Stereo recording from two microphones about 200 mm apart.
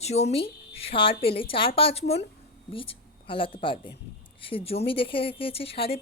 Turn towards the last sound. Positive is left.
turn(degrees=30)  # may be behind; listen again after turning